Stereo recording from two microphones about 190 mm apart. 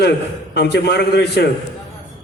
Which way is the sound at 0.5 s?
60° left (ahead or behind).